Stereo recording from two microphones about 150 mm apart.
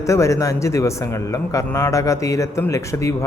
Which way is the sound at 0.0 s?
20° left (ahead or behind).